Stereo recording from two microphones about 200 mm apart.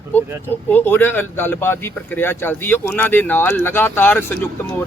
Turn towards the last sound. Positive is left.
turn(degrees=10)  # may be behind; listen again after turning